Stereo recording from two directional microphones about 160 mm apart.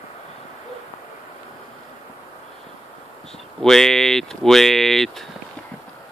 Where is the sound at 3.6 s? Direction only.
5° left (ahead or behind).